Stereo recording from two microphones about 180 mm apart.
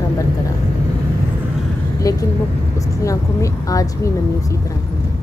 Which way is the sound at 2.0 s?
20° left (ahead or behind).